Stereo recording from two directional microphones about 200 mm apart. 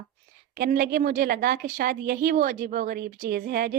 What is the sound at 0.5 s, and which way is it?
A woman's voice, 50° right (ahead or behind).